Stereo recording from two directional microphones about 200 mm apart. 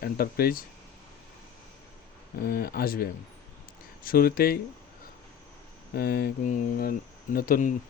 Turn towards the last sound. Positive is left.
turn(degrees=40)  # may be behind; listen again after turning